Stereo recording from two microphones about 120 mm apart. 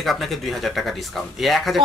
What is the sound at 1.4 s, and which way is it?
Speech, centre (ahead or behind).